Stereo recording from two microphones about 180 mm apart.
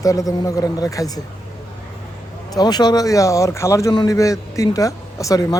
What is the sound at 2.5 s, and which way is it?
Speech, 20° left (ahead or behind).